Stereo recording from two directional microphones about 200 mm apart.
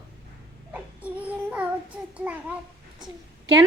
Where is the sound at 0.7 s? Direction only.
5° right (ahead or behind).